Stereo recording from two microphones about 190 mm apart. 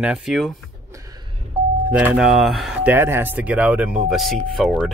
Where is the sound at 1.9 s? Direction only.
5° right (ahead or behind).